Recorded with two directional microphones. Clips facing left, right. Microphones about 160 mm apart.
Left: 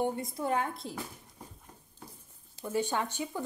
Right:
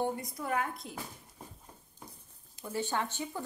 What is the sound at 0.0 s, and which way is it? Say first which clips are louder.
Speech: left 3 dB; 25° left (ahead or behind).